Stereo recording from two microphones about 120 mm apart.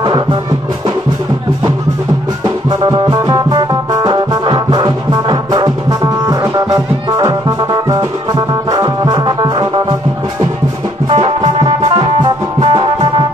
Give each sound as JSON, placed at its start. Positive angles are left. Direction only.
{"t": 0.0, "sound": "music", "side_deg": -40}
{"t": 2.4, "sound": "music", "side_deg": -35}
{"t": 11.1, "sound": "music", "side_deg": -50}